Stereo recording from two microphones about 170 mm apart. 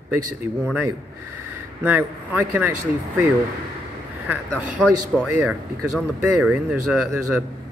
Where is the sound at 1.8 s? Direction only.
10° right (ahead or behind).